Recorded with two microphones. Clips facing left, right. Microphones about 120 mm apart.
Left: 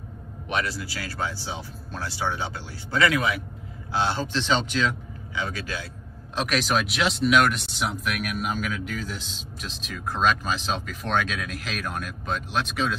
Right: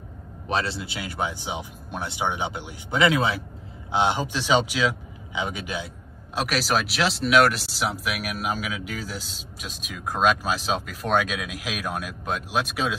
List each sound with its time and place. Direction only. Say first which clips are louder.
0.5 s speech: right 2 dB; 30° right (ahead or behind)
3.9 s speech: right 2 dB; 15° right (ahead or behind)
6.3 s speech: even; centre (ahead or behind)